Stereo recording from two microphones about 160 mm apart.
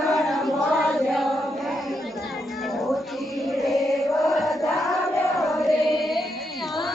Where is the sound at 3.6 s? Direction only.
Centre (ahead or behind).